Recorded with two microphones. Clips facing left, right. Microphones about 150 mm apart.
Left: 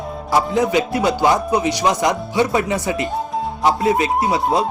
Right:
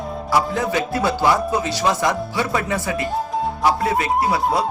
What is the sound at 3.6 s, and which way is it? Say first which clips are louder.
Speech: left 4 dB; 20° left (ahead or behind).